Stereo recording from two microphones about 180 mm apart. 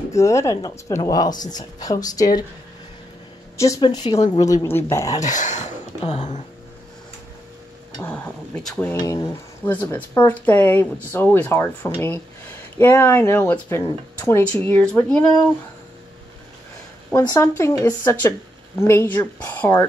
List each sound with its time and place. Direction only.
0.1 s speech: 15° left (ahead or behind)
3.5 s speech: 15° left (ahead or behind)
5.2 s speech: 45° left (ahead or behind)
8.6 s speech: 10° left (ahead or behind)
17.1 s speech: 20° left (ahead or behind)